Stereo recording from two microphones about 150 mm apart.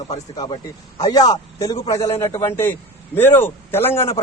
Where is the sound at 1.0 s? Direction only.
25° left (ahead or behind).